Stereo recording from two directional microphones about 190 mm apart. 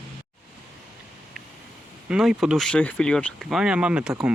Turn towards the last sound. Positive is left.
turn(degrees=-5)  # may be behind; listen again after turning